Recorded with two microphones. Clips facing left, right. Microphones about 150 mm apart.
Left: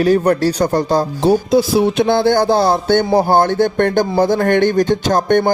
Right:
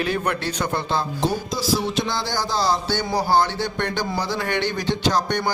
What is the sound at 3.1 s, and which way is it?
Music, 55° left (ahead or behind).